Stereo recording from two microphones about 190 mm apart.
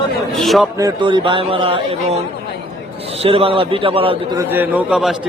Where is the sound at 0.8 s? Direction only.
25° right (ahead or behind).